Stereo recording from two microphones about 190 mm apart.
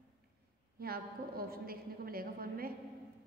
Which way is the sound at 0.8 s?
50° right (ahead or behind).